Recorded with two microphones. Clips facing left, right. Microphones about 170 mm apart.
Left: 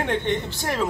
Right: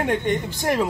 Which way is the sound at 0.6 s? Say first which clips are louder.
Right 4 dB; 15° right (ahead or behind).